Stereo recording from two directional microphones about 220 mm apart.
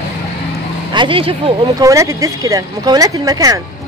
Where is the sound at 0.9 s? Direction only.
20° right (ahead or behind).